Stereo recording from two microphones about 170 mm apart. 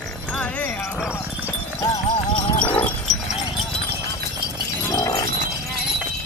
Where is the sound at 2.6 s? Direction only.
10° left (ahead or behind).